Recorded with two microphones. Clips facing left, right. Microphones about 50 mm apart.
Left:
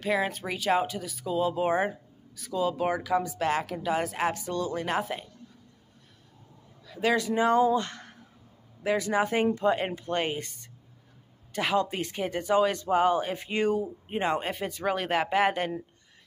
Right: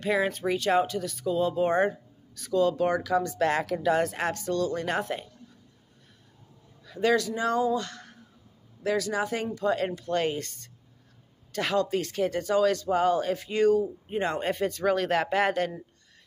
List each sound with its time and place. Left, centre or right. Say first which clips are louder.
0.0 s speech: right 2 dB; centre
4.8 s speech: even; centre
6.9 s speech: right 2 dB; centre
7.2 s speech: left 3 dB; left
14.4 s speech: right 4 dB; centre